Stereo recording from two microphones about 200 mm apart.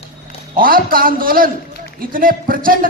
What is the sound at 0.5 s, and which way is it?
Speech, 45° right (ahead or behind).